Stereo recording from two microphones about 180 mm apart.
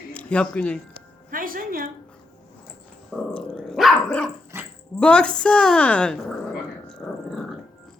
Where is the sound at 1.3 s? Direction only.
50° right (ahead or behind).